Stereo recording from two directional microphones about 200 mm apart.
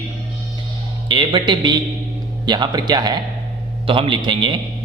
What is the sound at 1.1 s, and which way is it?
Speech, 25° right (ahead or behind).